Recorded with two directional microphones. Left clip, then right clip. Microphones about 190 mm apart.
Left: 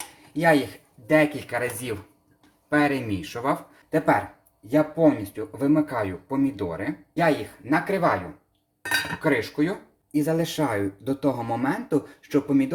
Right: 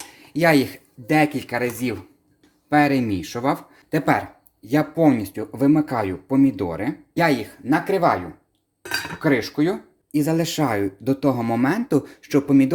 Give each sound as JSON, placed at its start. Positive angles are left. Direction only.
{"t": 0.3, "sound": "speech", "side_deg": -50}
{"t": 9.2, "sound": "speech", "side_deg": -50}
{"t": 10.1, "sound": "speech", "side_deg": -35}